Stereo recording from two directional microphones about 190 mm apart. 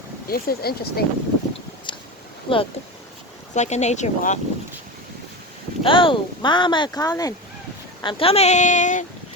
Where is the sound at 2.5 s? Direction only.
30° left (ahead or behind).